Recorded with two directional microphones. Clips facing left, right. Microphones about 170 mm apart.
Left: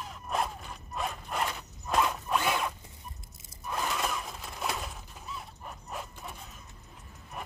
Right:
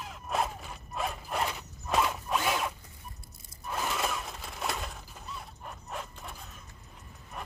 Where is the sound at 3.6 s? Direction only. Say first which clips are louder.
Even; centre (ahead or behind).